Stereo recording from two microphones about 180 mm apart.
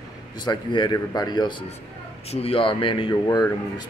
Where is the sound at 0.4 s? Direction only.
25° left (ahead or behind).